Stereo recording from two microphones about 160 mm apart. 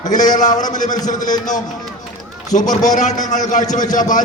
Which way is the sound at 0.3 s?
50° left (ahead or behind).